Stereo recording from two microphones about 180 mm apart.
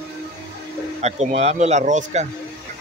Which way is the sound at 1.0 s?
40° right (ahead or behind).